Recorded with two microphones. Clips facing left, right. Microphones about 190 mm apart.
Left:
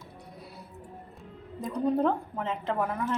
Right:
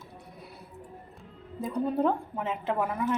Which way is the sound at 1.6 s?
5° right (ahead or behind).